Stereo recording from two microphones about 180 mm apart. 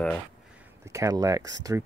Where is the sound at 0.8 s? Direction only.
15° right (ahead or behind).